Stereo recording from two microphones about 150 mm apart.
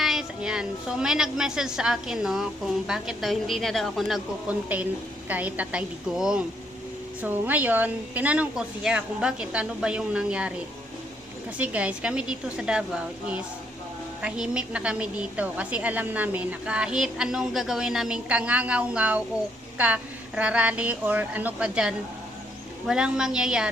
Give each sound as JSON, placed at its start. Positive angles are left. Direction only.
{"t": 0.0, "sound": "a woman's voice", "side_deg": -5}
{"t": 11.5, "sound": "a woman's voice", "side_deg": -10}